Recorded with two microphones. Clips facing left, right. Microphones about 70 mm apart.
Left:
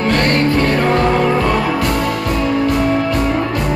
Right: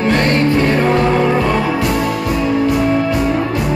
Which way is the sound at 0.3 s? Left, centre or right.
Right.